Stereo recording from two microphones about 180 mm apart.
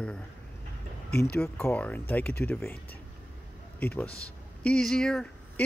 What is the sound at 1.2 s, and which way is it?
Speech, 5° left (ahead or behind).